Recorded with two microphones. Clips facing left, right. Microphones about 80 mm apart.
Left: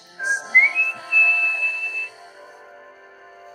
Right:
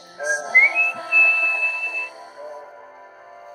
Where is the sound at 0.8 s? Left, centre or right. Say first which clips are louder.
Right 1 dB; right.